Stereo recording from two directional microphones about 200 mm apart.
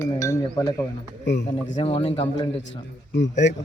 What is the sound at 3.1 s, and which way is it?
Speech, 60° left (ahead or behind).